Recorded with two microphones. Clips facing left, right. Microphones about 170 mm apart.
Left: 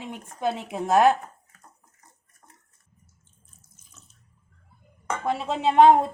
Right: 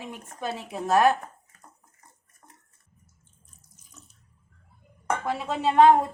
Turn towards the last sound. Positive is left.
turn(degrees=20)  # may be behind; listen again after turning